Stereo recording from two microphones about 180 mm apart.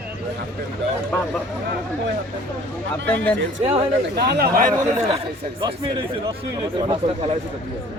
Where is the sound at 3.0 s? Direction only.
10° left (ahead or behind).